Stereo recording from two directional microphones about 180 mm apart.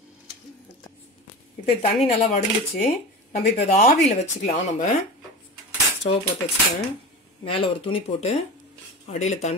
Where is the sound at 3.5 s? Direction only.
35° left (ahead or behind).